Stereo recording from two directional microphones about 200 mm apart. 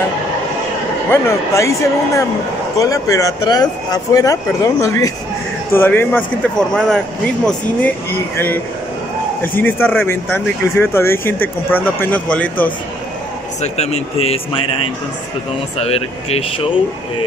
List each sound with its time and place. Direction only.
1.1 s speech: 15° left (ahead or behind)
13.6 s speech: 35° left (ahead or behind)
15.8 s speech: 30° left (ahead or behind)